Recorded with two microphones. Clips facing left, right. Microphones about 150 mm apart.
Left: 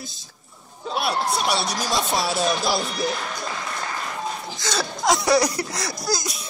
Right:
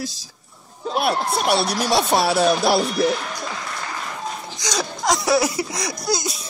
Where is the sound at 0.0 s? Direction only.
90° right.